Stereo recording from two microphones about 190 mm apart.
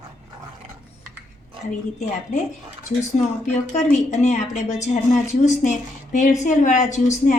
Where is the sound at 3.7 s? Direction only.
35° left (ahead or behind).